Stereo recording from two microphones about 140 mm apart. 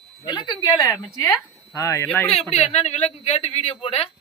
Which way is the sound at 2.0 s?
10° left (ahead or behind).